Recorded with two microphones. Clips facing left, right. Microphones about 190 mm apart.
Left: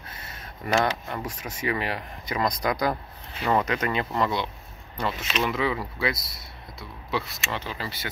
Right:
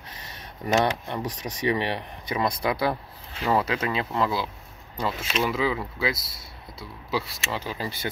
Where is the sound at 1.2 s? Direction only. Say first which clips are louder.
Right 5 dB; 35° right (ahead or behind).